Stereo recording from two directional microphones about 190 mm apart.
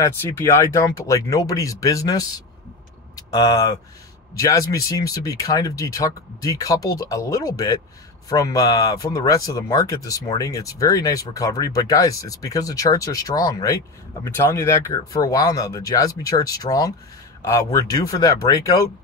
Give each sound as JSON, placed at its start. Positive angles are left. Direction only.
{"t": 0.0, "sound": "a man's voice", "side_deg": 15}